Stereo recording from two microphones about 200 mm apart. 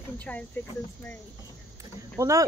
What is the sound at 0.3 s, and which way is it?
Speech, 10° left (ahead or behind).